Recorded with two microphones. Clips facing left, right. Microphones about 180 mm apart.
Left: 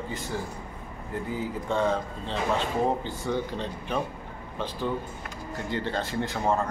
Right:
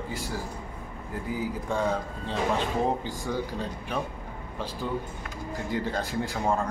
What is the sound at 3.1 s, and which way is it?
Speech, 5° right (ahead or behind).